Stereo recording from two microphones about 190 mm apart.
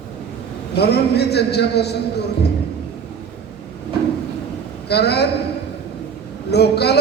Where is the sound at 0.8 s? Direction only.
60° left (ahead or behind).